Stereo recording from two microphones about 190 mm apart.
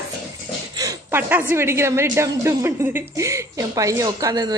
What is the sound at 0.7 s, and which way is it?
A woman's voice, 20° right (ahead or behind).